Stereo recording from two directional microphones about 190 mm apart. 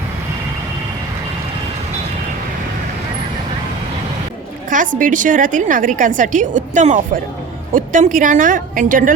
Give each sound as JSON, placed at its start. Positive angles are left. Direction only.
{"t": 4.7, "sound": "a woman's voice", "side_deg": -45}